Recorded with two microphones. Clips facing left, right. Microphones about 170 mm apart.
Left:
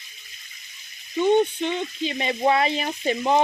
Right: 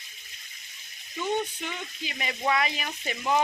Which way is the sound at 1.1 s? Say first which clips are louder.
Left 10 dB; 25° left (ahead or behind).